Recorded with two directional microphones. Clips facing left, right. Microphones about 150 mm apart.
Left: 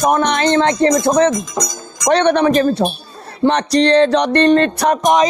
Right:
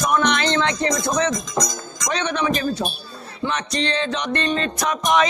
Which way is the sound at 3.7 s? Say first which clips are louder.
Left 13 dB; 35° left (ahead or behind).